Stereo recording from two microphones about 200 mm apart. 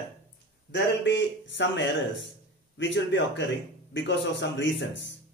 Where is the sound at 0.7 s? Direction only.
60° left (ahead or behind).